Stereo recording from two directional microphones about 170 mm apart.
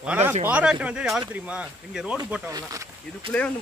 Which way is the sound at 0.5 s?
5° right (ahead or behind).